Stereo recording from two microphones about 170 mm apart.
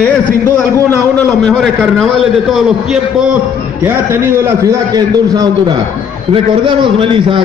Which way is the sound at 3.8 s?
15° right (ahead or behind).